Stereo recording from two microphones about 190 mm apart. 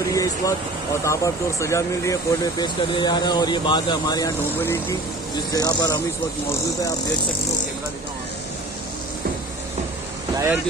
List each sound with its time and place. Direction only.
0.1 s a sound: 15° left (ahead or behind)
1.0 s speech: 15° left (ahead or behind)
4.6 s speech: 10° left (ahead or behind)
5.5 s speech: 20° left (ahead or behind)
10.3 s speech: 15° right (ahead or behind)